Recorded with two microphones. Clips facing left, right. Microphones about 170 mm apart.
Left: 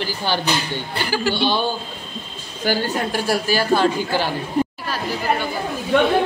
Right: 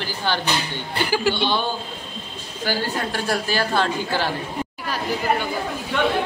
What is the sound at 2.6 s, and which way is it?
A woman's voice, 10° left (ahead or behind).